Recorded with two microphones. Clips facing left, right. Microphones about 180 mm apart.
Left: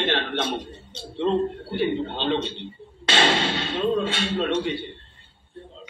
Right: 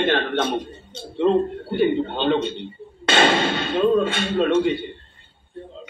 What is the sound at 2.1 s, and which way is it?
Speech, 50° right (ahead or behind).